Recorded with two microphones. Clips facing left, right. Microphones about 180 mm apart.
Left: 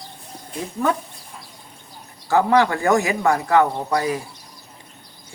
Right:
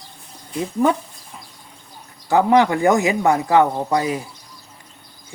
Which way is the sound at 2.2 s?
20° right (ahead or behind).